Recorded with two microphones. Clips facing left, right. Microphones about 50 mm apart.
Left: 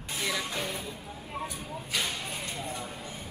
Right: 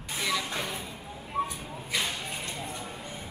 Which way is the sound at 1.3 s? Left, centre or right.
Right.